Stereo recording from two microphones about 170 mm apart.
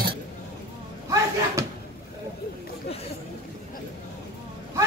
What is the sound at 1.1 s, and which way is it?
Slam, 15° right (ahead or behind).